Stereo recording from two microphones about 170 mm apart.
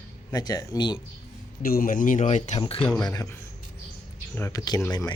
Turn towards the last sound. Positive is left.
turn(degrees=20)  # may be behind; listen again after turning